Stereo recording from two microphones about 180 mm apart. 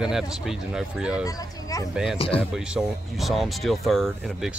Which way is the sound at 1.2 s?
20° left (ahead or behind).